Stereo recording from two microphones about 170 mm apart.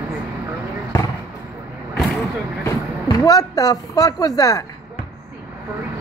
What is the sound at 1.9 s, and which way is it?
Vehicle, 5° left (ahead or behind).